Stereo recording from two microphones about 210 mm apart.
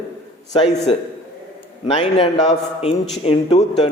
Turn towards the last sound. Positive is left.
turn(degrees=25)  # may be behind; listen again after turning